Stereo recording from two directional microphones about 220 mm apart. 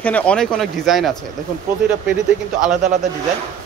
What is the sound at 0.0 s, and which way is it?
Speech, 5° left (ahead or behind).